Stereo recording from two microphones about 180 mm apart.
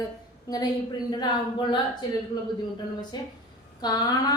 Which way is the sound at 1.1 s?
25° left (ahead or behind).